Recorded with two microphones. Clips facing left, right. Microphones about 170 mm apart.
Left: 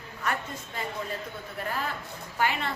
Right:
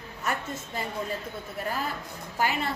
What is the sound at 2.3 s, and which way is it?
Speech, 40° right (ahead or behind).